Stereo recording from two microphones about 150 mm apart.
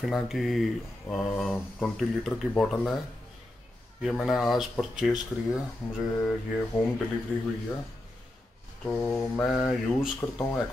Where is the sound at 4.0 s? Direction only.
Centre (ahead or behind).